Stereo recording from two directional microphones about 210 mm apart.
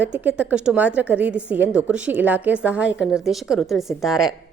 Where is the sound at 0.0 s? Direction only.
5° right (ahead or behind).